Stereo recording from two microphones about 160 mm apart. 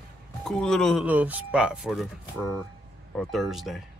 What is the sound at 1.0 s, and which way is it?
Speech, 10° right (ahead or behind).